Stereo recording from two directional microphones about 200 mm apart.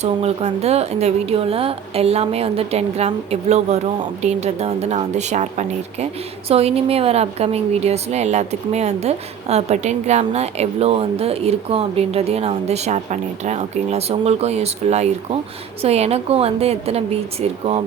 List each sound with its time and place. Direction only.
0.0 s a woman's voice: 35° right (ahead or behind)
4.2 s a woman's voice: 35° right (ahead or behind)